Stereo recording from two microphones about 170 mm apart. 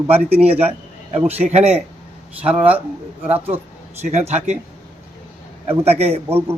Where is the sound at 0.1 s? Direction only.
35° right (ahead or behind).